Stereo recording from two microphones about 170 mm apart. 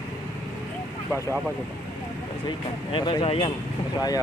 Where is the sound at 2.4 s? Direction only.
30° left (ahead or behind).